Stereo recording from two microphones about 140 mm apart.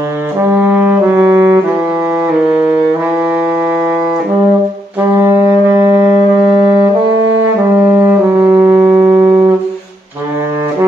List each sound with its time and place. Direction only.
0.4 s brass instrument: 15° right (ahead or behind)
5.2 s wind instrument: 15° right (ahead or behind)
6.4 s saxophone: 10° right (ahead or behind)
7.8 s brass instrument: 15° right (ahead or behind)